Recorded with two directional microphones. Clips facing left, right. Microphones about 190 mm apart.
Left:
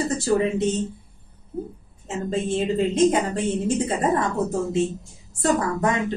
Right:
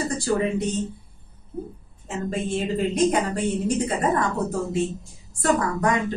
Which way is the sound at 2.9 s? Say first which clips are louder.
Left 1 dB; 25° left (ahead or behind).